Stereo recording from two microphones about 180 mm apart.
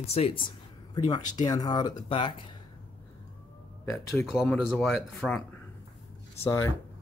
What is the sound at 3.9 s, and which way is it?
Speech, 10° left (ahead or behind).